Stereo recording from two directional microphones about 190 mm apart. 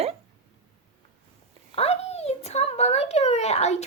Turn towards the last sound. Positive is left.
turn(degrees=35)  # may be behind; listen again after turning